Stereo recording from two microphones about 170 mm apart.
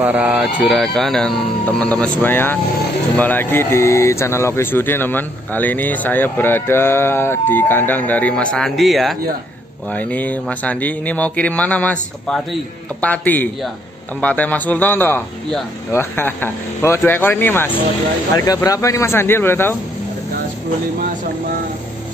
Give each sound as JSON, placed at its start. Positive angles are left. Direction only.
{"t": 0.0, "sound": "speech", "side_deg": -10}